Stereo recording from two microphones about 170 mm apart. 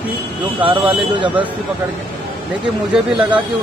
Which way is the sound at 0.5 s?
10° right (ahead or behind).